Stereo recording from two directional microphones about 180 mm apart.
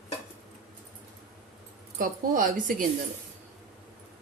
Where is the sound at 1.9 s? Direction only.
50° right (ahead or behind).